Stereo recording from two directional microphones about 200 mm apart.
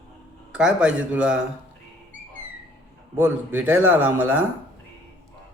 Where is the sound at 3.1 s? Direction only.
10° right (ahead or behind).